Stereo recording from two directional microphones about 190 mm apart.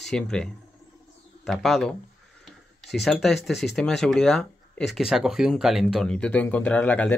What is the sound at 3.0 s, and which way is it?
Speech, centre (ahead or behind).